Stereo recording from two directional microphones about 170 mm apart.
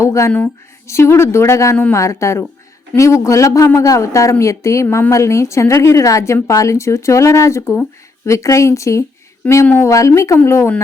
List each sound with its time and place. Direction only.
0.0 s speech: 15° left (ahead or behind)